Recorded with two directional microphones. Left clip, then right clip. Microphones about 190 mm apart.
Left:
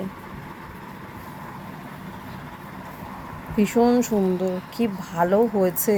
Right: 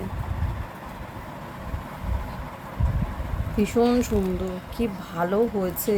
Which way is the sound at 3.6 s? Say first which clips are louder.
Left 2 dB; 10° left (ahead or behind).